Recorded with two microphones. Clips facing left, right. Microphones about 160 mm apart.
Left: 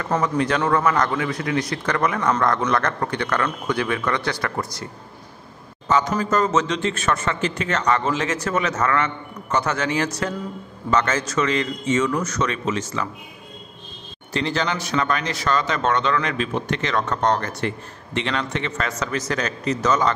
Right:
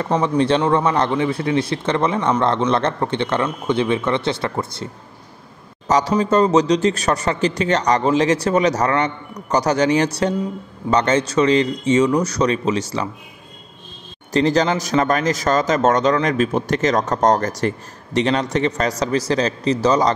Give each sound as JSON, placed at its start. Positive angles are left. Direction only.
{"t": 0.2, "sound": "a man's voice", "side_deg": -30}
{"t": 5.9, "sound": "a man's voice", "side_deg": -35}
{"t": 14.3, "sound": "a man's voice", "side_deg": -40}